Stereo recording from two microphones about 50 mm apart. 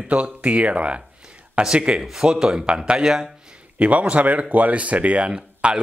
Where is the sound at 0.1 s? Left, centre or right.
Right.